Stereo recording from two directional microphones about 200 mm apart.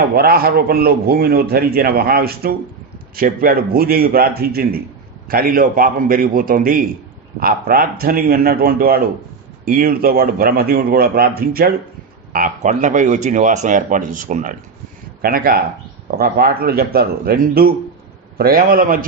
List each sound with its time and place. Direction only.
0.2 s a man's voice: 50° right (ahead or behind)